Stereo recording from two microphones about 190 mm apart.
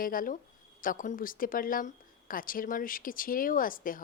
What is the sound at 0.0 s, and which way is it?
Speech, 45° left (ahead or behind).